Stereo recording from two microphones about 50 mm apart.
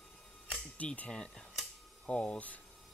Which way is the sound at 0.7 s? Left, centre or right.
Left.